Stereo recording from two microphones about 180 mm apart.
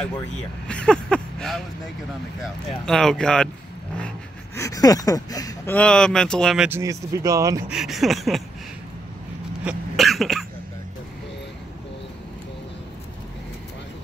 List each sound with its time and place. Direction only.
0.7 s a sound: 5° left (ahead or behind)
2.8 s speech: 5° left (ahead or behind)
4.6 s speech: 20° left (ahead or behind)
5.8 s speech: 5° left (ahead or behind)
6.7 s speech: 15° right (ahead or behind)
7.7 s speech: centre (ahead or behind)
9.7 s throat clearing: centre (ahead or behind)